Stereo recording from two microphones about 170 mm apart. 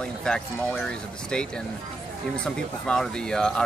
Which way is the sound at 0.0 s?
5° left (ahead or behind).